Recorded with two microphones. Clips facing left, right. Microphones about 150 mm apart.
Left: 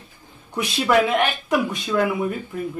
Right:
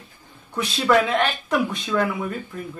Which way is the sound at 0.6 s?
15° left (ahead or behind).